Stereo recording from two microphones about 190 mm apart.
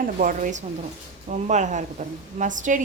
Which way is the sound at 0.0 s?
45° right (ahead or behind).